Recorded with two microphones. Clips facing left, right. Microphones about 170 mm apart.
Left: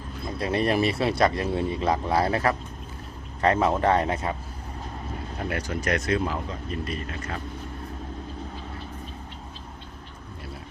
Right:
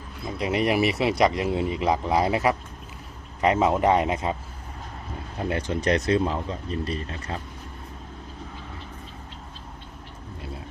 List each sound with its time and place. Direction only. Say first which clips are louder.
0.3 s speech: right 1 dB; 15° right (ahead or behind)
5.4 s speech: right 4 dB; 25° right (ahead or behind)